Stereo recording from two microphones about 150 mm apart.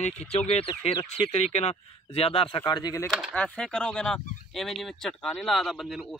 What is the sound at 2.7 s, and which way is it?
Speech, 20° left (ahead or behind).